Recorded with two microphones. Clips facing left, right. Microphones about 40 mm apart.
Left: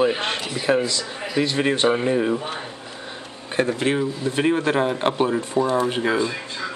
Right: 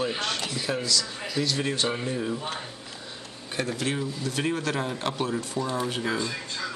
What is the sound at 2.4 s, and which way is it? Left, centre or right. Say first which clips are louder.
Speech: left 4 dB; centre.